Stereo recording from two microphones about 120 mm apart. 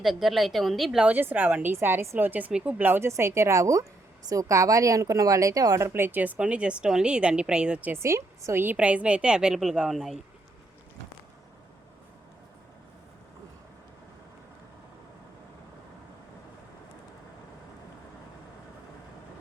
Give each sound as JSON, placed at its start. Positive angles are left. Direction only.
{"t": 0.0, "sound": "a woman's voice", "side_deg": 0}
{"t": 8.0, "sound": "a woman's voice", "side_deg": -25}